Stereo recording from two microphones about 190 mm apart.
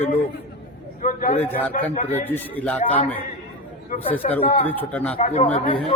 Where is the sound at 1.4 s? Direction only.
10° left (ahead or behind).